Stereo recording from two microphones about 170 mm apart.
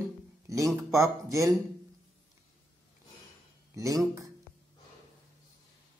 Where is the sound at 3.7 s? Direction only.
20° right (ahead or behind).